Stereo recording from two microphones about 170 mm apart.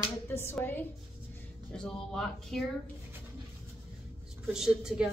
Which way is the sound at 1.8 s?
5° left (ahead or behind).